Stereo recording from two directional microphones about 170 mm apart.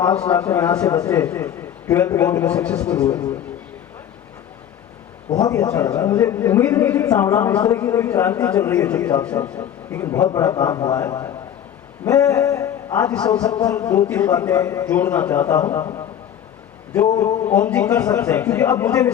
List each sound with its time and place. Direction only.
0.0 s a man's voice: 10° left (ahead or behind)
5.3 s a man's voice: 20° left (ahead or behind)
17.1 s a man's voice: 20° left (ahead or behind)